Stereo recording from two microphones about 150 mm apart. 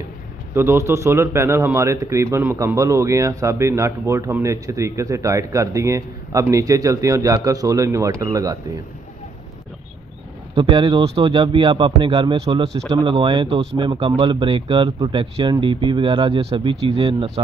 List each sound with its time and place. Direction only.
0.6 s speech: 15° right (ahead or behind)
10.5 s speech: 35° right (ahead or behind)